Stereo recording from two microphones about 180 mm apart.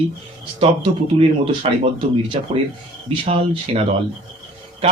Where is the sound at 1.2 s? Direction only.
35° right (ahead or behind).